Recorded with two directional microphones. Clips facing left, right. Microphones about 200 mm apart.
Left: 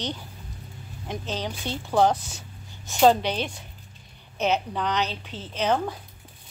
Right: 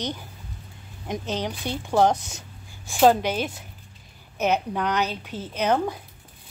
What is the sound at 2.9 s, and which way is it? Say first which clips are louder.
A woman's voice: right 1 dB; 10° right (ahead or behind).